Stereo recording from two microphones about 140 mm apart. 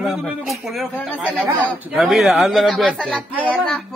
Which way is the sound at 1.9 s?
Centre (ahead or behind).